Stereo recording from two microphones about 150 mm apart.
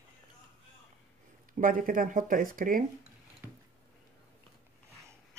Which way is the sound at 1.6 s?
65° right (ahead or behind).